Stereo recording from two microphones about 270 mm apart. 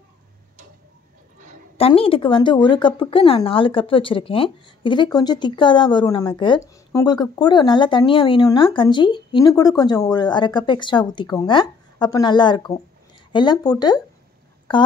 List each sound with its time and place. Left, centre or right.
1.8 s speech: centre